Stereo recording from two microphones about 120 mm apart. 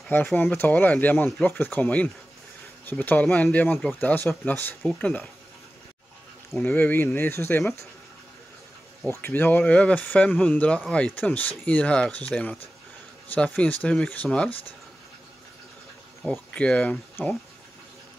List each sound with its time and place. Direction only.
0.1 s speech: 15° left (ahead or behind)
6.6 s speech: 15° left (ahead or behind)
9.0 s speech: 15° left (ahead or behind)
16.2 s speech: 5° left (ahead or behind)